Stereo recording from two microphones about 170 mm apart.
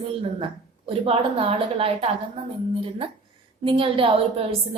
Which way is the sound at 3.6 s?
30° right (ahead or behind).